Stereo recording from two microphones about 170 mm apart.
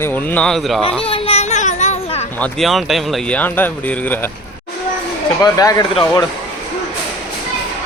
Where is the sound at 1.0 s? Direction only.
35° left (ahead or behind).